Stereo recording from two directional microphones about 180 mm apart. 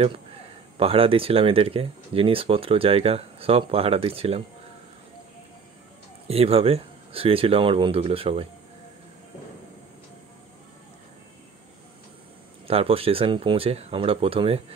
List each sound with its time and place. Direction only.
0.7 s speech: 30° right (ahead or behind)
6.2 s speech: 35° right (ahead or behind)
12.6 s speech: 30° right (ahead or behind)